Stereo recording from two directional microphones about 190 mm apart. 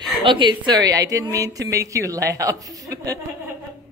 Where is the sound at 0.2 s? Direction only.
25° right (ahead or behind).